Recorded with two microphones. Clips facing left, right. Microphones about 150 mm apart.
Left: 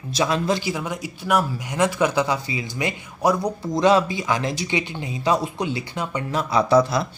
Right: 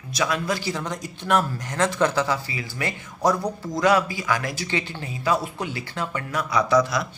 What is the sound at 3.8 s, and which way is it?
Speech, 25° left (ahead or behind).